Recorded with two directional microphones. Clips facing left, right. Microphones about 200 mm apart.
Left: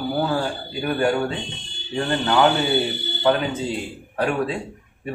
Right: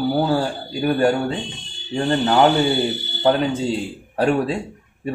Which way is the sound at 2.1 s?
30° right (ahead or behind).